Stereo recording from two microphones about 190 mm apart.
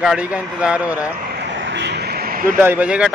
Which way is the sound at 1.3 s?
70° right (ahead or behind).